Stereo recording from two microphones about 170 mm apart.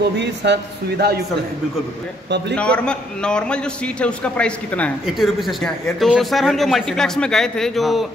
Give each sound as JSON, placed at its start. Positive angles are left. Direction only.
{"t": 0.2, "sound": "speech", "side_deg": -90}
{"t": 2.2, "sound": "a man's voice", "side_deg": -85}
{"t": 2.5, "sound": "a man's voice", "side_deg": 5}